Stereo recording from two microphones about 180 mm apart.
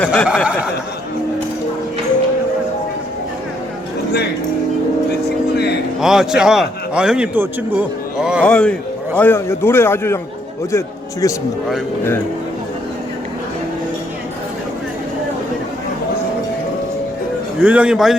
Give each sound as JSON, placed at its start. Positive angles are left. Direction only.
{"t": 0.0, "sound": "a man's voice", "side_deg": 5}
{"t": 0.3, "sound": "a man's voice", "side_deg": -5}
{"t": 6.0, "sound": "a man's voice", "side_deg": 0}
{"t": 8.4, "sound": "a man's voice", "side_deg": 5}
{"t": 17.6, "sound": "a man's voice", "side_deg": -5}